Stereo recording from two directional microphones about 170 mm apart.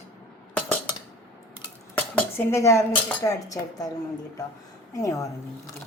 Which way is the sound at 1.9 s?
15° left (ahead or behind).